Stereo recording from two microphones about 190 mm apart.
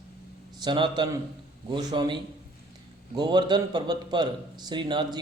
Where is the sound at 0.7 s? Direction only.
25° right (ahead or behind).